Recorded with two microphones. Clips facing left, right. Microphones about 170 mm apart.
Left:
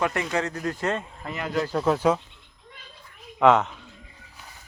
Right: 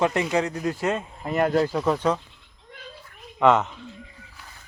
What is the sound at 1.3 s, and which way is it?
Speech, 50° right (ahead or behind).